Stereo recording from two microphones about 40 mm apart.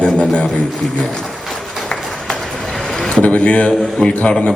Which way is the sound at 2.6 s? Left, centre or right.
Centre.